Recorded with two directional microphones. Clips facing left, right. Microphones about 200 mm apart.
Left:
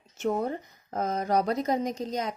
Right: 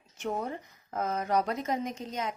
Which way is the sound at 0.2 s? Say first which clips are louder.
Left 5 dB; 35° left (ahead or behind).